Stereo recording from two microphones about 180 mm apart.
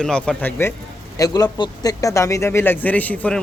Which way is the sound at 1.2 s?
20° left (ahead or behind).